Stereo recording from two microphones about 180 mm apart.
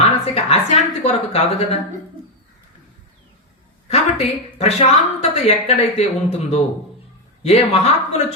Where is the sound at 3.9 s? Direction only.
35° left (ahead or behind).